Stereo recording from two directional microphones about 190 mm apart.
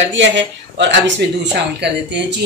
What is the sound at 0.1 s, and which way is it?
Speech, 70° right (ahead or behind).